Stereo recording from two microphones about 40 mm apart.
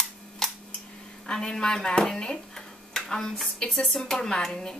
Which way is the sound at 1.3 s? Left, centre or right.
Centre.